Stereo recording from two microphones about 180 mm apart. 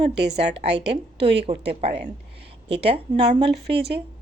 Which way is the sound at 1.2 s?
70° right (ahead or behind).